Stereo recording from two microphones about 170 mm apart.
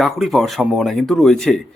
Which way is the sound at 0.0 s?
Centre (ahead or behind).